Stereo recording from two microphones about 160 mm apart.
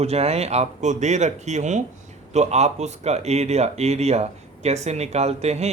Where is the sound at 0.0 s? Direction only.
40° right (ahead or behind).